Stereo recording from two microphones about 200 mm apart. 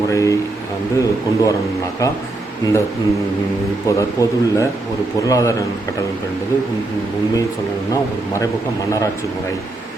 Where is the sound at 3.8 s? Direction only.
15° left (ahead or behind).